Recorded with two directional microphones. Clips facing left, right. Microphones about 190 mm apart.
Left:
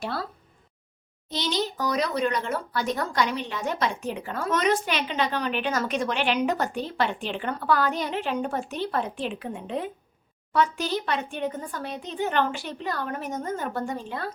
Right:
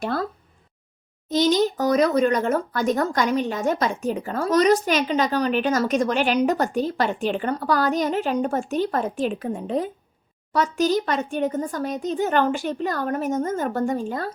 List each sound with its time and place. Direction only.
0.0 s speech: 45° right (ahead or behind)
1.3 s speech: 45° right (ahead or behind)